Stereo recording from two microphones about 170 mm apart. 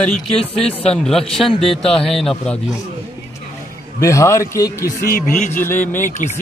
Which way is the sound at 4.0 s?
20° left (ahead or behind).